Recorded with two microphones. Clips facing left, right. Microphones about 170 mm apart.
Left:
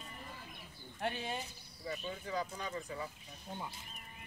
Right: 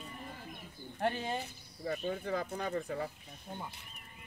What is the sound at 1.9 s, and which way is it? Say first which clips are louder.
Speech: right 6 dB; 55° right (ahead or behind).